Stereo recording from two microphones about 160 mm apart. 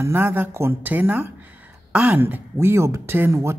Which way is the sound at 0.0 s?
15° right (ahead or behind).